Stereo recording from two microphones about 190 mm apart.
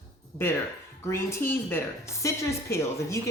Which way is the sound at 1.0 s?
15° left (ahead or behind).